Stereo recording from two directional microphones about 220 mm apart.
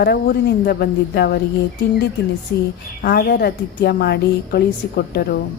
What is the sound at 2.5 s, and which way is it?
A woman's voice, 45° left (ahead or behind).